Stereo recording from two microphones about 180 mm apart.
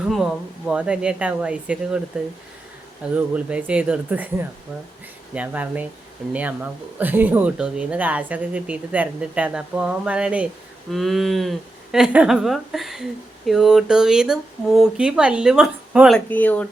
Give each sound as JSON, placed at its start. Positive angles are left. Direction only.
{"t": 0.0, "sound": "speech", "side_deg": 0}
{"t": 3.2, "sound": "speech", "side_deg": -5}